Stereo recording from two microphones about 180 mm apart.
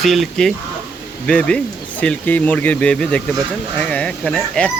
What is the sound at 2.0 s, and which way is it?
Speech, 10° left (ahead or behind).